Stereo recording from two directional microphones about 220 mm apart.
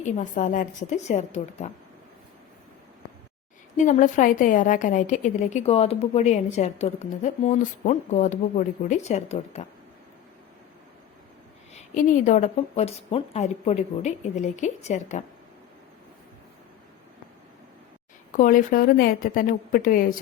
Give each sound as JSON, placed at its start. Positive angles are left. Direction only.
{"t": 0.0, "sound": "a woman's voice", "side_deg": 35}
{"t": 3.8, "sound": "a woman's voice", "side_deg": 35}
{"t": 11.7, "sound": "a woman's voice", "side_deg": 35}
{"t": 18.3, "sound": "a woman's voice", "side_deg": 40}